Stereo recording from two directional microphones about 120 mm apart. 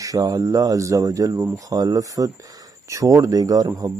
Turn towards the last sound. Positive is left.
turn(degrees=-30)  # may be behind; listen again after turning